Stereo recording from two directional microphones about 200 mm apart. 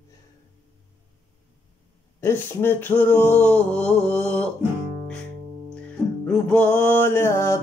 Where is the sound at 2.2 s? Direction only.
10° left (ahead or behind).